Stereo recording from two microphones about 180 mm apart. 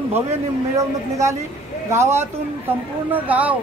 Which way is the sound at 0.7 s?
15° right (ahead or behind).